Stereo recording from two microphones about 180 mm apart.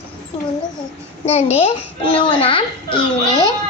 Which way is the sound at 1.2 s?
35° left (ahead or behind).